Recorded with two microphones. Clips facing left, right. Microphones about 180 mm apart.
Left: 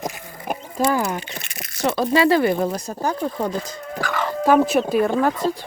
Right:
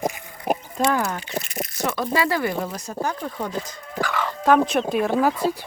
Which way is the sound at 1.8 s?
30° left (ahead or behind).